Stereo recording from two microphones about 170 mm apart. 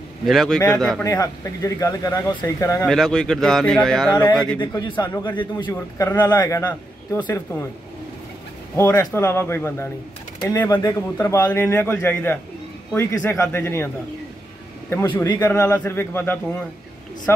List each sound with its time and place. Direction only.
0.3 s speech: centre (ahead or behind)
1.0 s speech: 20° left (ahead or behind)
2.9 s speech: centre (ahead or behind)
4.7 s a man's voice: 25° left (ahead or behind)
8.7 s a man's voice: 15° left (ahead or behind)
15.1 s a man's voice: 20° left (ahead or behind)